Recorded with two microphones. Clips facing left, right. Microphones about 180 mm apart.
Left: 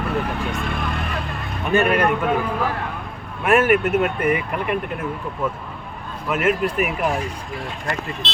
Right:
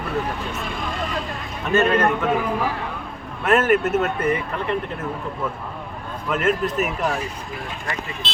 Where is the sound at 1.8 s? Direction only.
15° left (ahead or behind).